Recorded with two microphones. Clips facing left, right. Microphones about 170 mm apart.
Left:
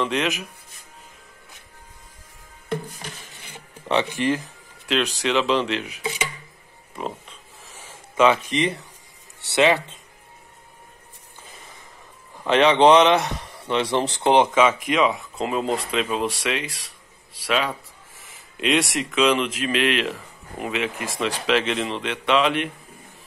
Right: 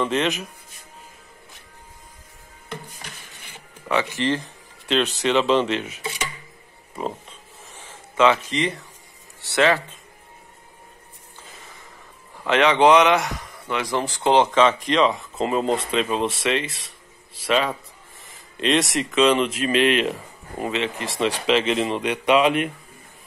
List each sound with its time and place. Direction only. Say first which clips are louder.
0.0 s speech: right 1 dB; centre (ahead or behind)
3.9 s speech: left 1 dB; 20° left (ahead or behind)
4.8 s speech: right 2 dB; centre (ahead or behind)
7.0 s a sound: right 2 dB; centre (ahead or behind)
7.8 s speech: even; 15° left (ahead or behind)
12.4 s speech: left 1 dB; 20° left (ahead or behind); by 22.7 s 5° right (ahead or behind)